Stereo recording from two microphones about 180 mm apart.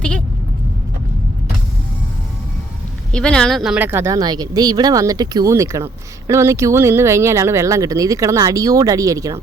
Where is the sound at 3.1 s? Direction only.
5° left (ahead or behind).